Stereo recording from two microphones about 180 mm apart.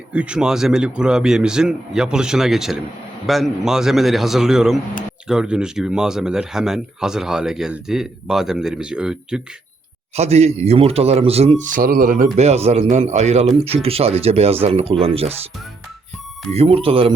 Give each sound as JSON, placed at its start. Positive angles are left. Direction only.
{"t": 0.1, "sound": "speech", "side_deg": -5}
{"t": 10.2, "sound": "speech", "side_deg": -35}
{"t": 16.5, "sound": "speech", "side_deg": -35}